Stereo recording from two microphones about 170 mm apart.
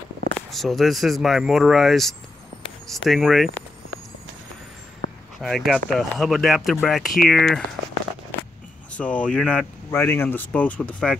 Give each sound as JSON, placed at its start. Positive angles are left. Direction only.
{"t": 0.5, "sound": "speech", "side_deg": 0}
{"t": 5.0, "sound": "a sound", "side_deg": -90}
{"t": 5.4, "sound": "speech", "side_deg": 0}
{"t": 8.9, "sound": "speech", "side_deg": 5}